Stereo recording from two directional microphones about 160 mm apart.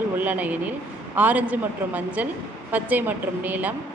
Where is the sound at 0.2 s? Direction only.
10° right (ahead or behind).